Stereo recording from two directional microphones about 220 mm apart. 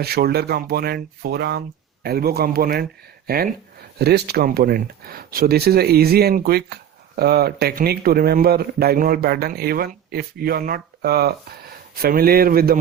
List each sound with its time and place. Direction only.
0.0 s a man's voice: 45° right (ahead or behind)